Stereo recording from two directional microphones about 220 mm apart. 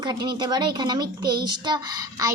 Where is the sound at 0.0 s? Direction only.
20° right (ahead or behind).